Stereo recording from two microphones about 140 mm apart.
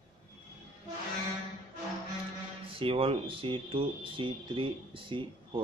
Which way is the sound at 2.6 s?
40° right (ahead or behind).